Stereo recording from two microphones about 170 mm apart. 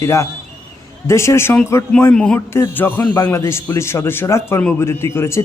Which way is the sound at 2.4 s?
15° left (ahead or behind).